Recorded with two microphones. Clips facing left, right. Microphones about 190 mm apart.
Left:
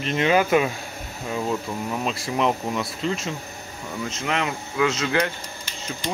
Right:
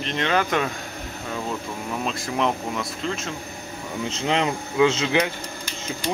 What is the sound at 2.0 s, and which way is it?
Speech, 5° left (ahead or behind).